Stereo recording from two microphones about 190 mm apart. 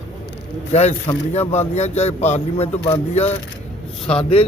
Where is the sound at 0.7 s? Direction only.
35° left (ahead or behind).